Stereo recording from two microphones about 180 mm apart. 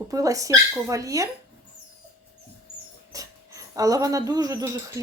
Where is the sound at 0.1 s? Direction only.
20° right (ahead or behind).